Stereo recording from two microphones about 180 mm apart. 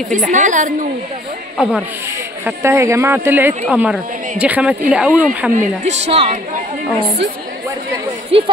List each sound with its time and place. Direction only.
0.1 s a woman's voice: 45° right (ahead or behind)
1.6 s a woman's voice: 5° right (ahead or behind)
5.9 s a woman's voice: 35° right (ahead or behind)
8.3 s a woman's voice: 30° right (ahead or behind)